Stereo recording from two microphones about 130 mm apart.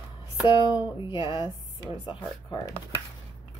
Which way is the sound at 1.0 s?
40° left (ahead or behind).